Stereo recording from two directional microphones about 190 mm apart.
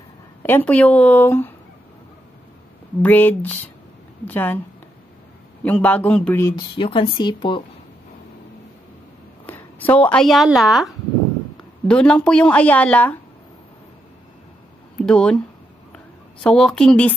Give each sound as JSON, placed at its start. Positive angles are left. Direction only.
{"t": 0.4, "sound": "speech", "side_deg": 10}
{"t": 3.0, "sound": "speech", "side_deg": 10}
{"t": 5.6, "sound": "speech", "side_deg": 10}
{"t": 6.8, "sound": "speech", "side_deg": 25}
{"t": 9.5, "sound": "a woman's voice", "side_deg": 10}
{"t": 15.0, "sound": "speech", "side_deg": 5}
{"t": 15.9, "sound": "a sound", "side_deg": 5}